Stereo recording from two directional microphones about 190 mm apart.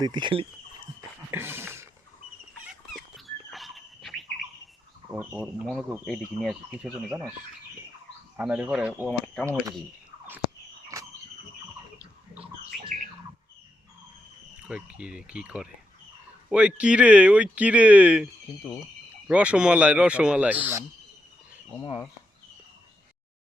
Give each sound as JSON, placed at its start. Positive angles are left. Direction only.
{"t": 0.0, "sound": "speech", "side_deg": -25}
{"t": 1.3, "sound": "a sound", "side_deg": -10}
{"t": 2.9, "sound": "dog", "side_deg": 0}
{"t": 5.1, "sound": "speech", "side_deg": -5}
{"t": 8.4, "sound": "speech", "side_deg": -5}
{"t": 10.9, "sound": "a sound", "side_deg": -15}
{"t": 14.5, "sound": "speech", "side_deg": -5}
{"t": 19.3, "sound": "speech", "side_deg": -5}
{"t": 21.8, "sound": "speech", "side_deg": 25}